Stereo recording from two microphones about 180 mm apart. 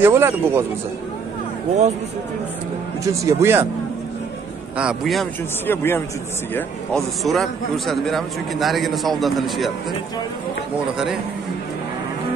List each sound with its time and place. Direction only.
0.0 s speech: 15° right (ahead or behind)
3.0 s speech: 15° right (ahead or behind)
4.7 s speech: centre (ahead or behind)
5.7 s a man's voice: 10° left (ahead or behind)